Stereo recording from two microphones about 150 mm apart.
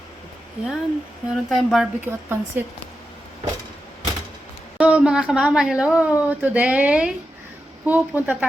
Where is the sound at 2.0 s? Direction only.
15° right (ahead or behind).